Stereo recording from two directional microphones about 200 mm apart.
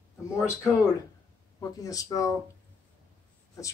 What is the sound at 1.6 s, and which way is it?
Speech, 15° left (ahead or behind).